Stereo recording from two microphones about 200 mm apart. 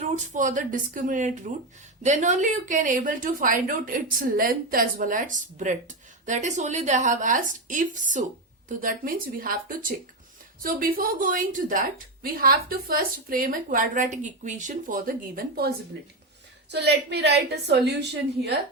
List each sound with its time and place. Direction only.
0.0 s a woman's voice: 40° right (ahead or behind)
16.7 s a woman's voice: 55° right (ahead or behind)